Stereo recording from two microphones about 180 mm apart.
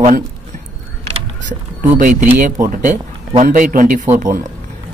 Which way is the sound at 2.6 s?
45° right (ahead or behind).